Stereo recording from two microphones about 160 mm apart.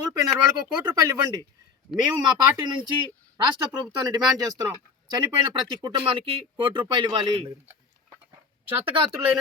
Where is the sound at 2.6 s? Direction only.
30° right (ahead or behind).